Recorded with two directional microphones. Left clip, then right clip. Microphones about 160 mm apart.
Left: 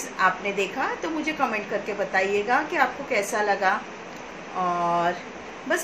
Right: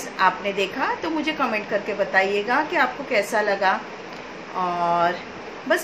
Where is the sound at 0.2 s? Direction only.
5° right (ahead or behind).